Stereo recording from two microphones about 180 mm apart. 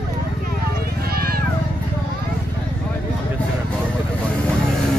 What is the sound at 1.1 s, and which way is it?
Vehicle, 55° right (ahead or behind).